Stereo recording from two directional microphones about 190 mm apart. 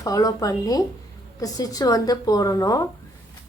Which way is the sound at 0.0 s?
20° left (ahead or behind).